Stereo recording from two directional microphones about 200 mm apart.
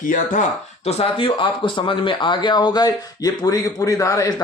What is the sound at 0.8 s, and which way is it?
Speech, 30° left (ahead or behind).